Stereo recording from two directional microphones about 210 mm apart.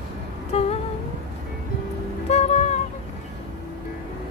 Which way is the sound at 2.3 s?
30° left (ahead or behind).